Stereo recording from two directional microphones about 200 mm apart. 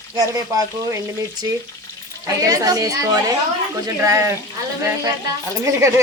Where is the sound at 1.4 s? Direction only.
20° right (ahead or behind).